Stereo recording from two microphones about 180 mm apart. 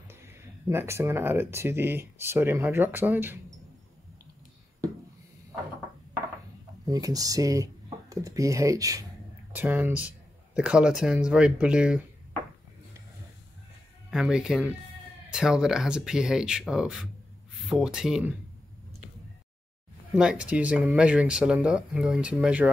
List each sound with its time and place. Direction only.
0.1 s speech: 15° right (ahead or behind)
6.9 s speech: 20° right (ahead or behind)
14.1 s speech: 5° right (ahead or behind)
20.2 s speech: 5° right (ahead or behind)